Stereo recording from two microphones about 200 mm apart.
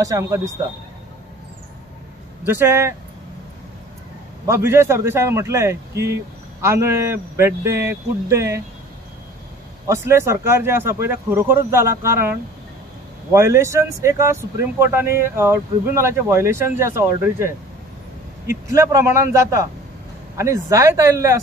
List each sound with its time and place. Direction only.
0.0 s speech: 15° right (ahead or behind)
2.4 s speech: 10° right (ahead or behind)
4.5 s speech: 15° right (ahead or behind)
9.8 s speech: 15° right (ahead or behind)